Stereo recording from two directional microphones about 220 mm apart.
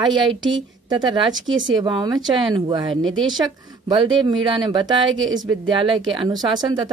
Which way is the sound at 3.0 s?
60° right (ahead or behind).